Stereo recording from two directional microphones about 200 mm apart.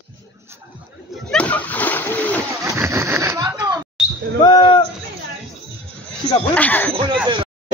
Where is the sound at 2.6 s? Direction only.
15° right (ahead or behind).